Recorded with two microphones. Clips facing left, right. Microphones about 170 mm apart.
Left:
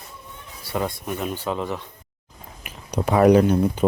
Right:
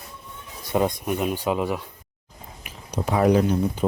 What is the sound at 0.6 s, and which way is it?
Speech, 20° right (ahead or behind).